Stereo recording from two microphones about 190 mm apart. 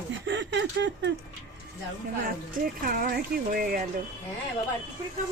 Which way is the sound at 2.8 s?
50° right (ahead or behind).